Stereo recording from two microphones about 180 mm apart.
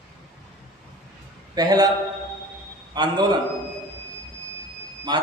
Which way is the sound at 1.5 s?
20° right (ahead or behind).